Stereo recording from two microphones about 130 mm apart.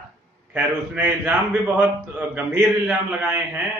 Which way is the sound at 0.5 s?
15° right (ahead or behind).